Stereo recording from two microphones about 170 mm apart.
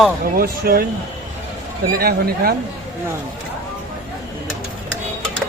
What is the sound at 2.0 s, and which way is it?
Speech, 60° right (ahead or behind).